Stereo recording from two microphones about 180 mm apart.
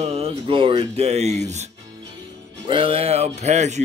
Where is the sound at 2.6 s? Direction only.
30° right (ahead or behind).